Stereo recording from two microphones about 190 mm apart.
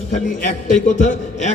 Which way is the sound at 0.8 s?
40° left (ahead or behind).